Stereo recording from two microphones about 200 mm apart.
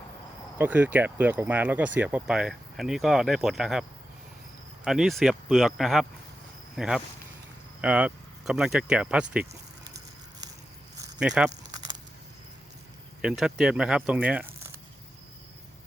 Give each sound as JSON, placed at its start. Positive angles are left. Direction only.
{"t": 0.6, "sound": "speech", "side_deg": -10}
{"t": 11.2, "sound": "speech", "side_deg": -5}
{"t": 11.6, "sound": "a sound", "side_deg": -20}
{"t": 13.2, "sound": "speech", "side_deg": -5}